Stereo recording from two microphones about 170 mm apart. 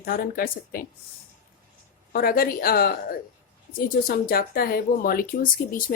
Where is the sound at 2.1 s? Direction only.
60° left (ahead or behind).